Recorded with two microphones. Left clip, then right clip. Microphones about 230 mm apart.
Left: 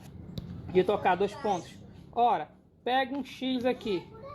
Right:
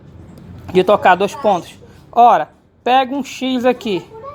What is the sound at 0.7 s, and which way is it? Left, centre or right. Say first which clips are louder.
Speech: right 15 dB; centre.